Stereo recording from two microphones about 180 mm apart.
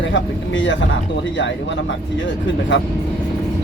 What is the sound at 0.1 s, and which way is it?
Speech, 90° left.